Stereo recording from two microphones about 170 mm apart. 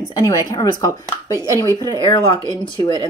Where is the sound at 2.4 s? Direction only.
20° right (ahead or behind).